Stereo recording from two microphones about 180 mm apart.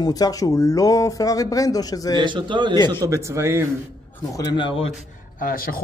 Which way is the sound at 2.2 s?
25° right (ahead or behind).